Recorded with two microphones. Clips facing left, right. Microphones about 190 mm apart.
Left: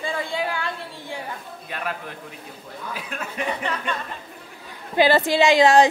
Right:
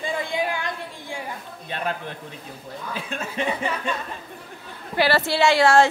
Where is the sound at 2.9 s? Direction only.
25° right (ahead or behind).